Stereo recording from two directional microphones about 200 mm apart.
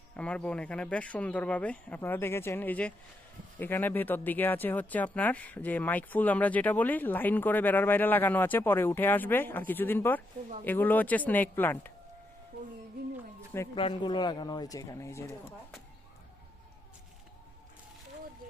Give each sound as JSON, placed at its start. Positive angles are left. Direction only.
{"t": 0.2, "sound": "speech", "side_deg": 5}
{"t": 13.7, "sound": "a man's voice", "side_deg": 25}